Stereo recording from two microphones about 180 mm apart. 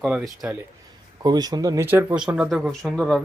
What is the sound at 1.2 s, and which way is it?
Speech, 20° right (ahead or behind).